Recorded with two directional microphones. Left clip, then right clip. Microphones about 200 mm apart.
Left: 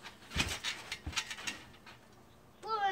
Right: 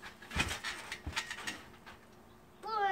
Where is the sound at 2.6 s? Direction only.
5° left (ahead or behind).